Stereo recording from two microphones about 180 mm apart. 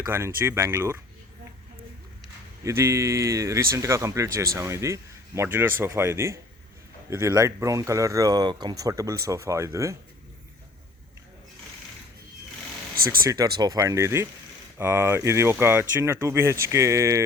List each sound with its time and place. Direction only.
0.1 s speech: 15° right (ahead or behind)
2.6 s speech: 15° right (ahead or behind)
13.2 s speech: 20° right (ahead or behind)